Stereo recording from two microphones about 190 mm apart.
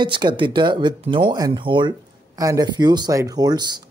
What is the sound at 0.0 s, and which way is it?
Speech, 25° right (ahead or behind).